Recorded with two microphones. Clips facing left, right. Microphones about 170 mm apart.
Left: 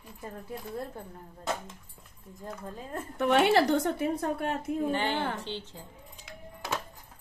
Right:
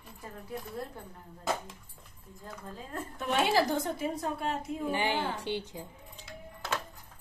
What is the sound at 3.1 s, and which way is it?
Speech, 65° left (ahead or behind).